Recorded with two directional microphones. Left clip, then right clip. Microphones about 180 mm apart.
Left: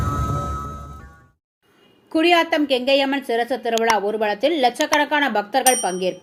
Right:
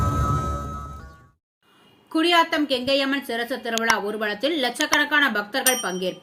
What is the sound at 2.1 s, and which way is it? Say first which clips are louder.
Speech: left 2 dB; 10° left (ahead or behind).